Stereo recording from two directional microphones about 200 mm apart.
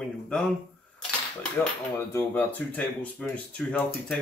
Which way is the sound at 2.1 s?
10° left (ahead or behind).